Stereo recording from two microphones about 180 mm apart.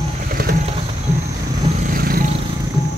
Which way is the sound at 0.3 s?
55° right (ahead or behind).